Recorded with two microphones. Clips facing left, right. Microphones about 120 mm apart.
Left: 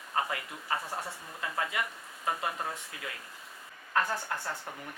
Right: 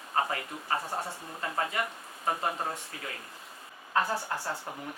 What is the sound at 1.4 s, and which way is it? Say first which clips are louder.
A woman's voice: right 2 dB; 35° right (ahead or behind).